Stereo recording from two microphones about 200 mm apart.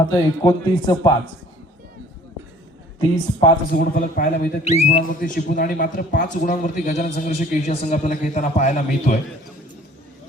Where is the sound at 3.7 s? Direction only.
50° left (ahead or behind).